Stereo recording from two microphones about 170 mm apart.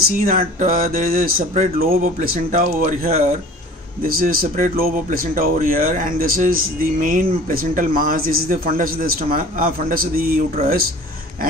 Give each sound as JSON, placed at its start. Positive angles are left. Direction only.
{"t": 0.3, "sound": "speech", "side_deg": -55}